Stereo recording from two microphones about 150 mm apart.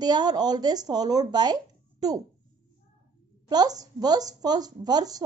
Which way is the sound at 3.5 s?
25° right (ahead or behind).